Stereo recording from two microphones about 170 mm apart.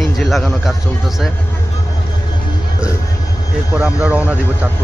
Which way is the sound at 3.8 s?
5° right (ahead or behind).